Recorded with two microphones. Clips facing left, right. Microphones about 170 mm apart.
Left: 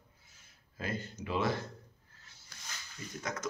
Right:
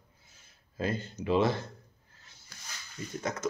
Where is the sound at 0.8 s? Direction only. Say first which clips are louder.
Right 6 dB; 25° right (ahead or behind).